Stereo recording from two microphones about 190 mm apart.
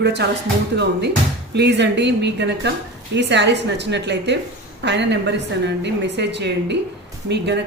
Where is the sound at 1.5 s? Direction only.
65° right (ahead or behind).